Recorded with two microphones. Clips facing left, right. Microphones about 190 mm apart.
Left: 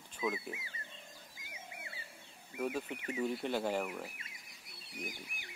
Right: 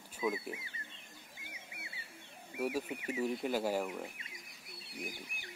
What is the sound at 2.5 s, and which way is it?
Speech, 10° right (ahead or behind).